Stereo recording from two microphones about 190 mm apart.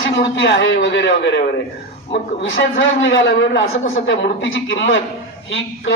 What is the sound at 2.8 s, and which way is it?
A man's voice, 80° left.